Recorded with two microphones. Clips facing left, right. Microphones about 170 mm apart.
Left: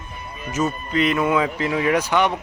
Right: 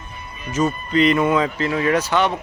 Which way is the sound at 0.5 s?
5° left (ahead or behind).